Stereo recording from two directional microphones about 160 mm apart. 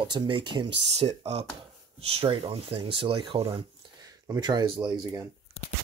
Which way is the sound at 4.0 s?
25° right (ahead or behind).